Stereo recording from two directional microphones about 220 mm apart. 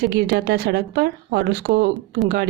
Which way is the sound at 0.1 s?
45° right (ahead or behind).